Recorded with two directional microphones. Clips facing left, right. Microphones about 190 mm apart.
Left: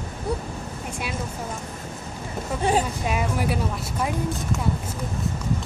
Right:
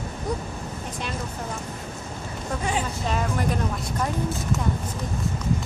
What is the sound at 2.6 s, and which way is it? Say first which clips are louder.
Speech: left 6 dB; 35° left (ahead or behind).